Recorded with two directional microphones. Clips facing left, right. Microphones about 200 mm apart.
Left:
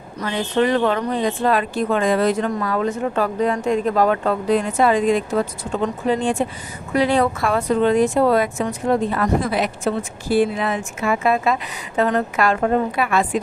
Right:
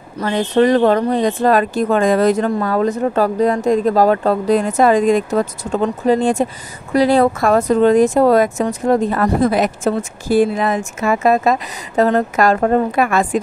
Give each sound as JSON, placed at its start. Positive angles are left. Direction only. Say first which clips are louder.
{"t": 0.2, "sound": "speech", "louder": "right 5 dB", "side_deg": -40}